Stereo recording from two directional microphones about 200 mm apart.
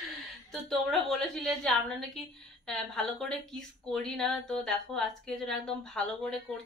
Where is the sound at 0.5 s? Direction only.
Centre (ahead or behind).